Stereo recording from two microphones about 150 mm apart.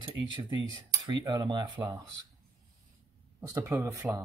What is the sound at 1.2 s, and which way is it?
Speech, 25° right (ahead or behind).